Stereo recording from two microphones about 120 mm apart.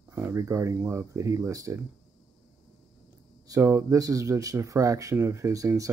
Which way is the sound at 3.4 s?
25° right (ahead or behind).